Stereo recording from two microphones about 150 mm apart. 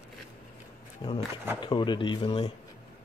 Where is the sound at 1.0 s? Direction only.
30° left (ahead or behind).